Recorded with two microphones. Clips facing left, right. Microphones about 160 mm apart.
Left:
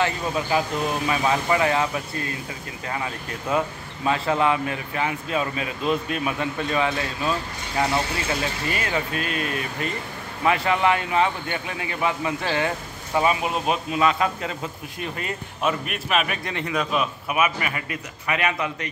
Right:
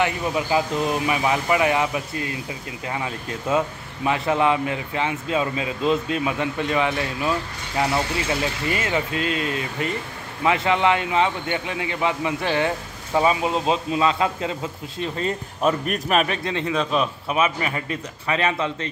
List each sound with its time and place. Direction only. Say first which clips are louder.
0.0 s a man's voice: right 2 dB; 20° right (ahead or behind); by 16.3 s 40° right (ahead or behind)
16.4 s a man's voice: right 4 dB; 20° right (ahead or behind)
16.7 s a man's voice: right 1 dB; 5° left (ahead or behind)
17.3 s a man's voice: right 1 dB; 30° right (ahead or behind)